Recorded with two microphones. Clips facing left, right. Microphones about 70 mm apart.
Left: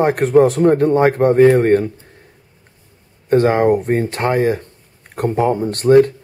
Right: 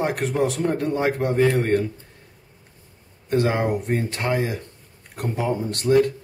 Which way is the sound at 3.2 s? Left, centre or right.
Left.